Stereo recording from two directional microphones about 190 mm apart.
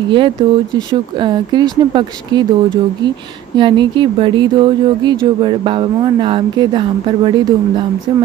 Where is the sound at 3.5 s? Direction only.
25° right (ahead or behind).